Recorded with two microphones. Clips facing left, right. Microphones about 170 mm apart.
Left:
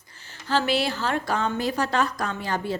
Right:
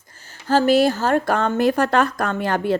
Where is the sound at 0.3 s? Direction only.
45° right (ahead or behind).